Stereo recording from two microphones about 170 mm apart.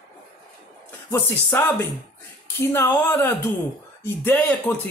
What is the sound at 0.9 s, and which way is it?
A woman's voice, 15° left (ahead or behind).